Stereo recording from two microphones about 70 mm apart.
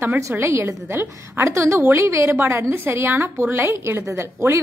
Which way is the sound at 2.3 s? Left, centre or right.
Right.